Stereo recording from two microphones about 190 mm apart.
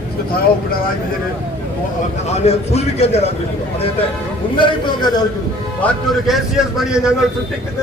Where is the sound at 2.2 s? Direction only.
35° left (ahead or behind).